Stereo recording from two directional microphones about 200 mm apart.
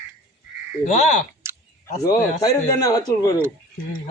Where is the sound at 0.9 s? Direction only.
35° left (ahead or behind).